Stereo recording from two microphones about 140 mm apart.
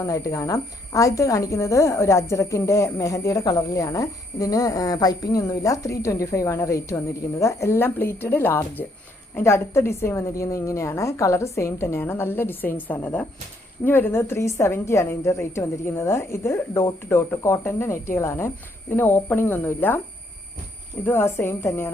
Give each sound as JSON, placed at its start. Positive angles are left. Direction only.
{"t": 0.0, "sound": "speech", "side_deg": 25}
{"t": 21.0, "sound": "speech", "side_deg": 15}